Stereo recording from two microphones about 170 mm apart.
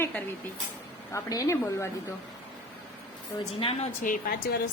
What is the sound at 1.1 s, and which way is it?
A woman's voice, 20° left (ahead or behind).